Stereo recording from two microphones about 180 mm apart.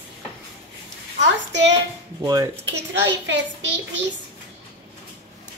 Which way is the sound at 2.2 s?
20° right (ahead or behind).